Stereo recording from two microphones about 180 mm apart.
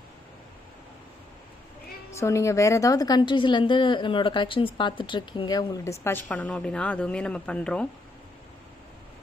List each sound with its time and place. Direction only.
2.0 s a woman's voice: 15° left (ahead or behind)